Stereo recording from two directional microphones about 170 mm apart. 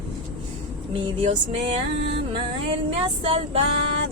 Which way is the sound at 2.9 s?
35° right (ahead or behind).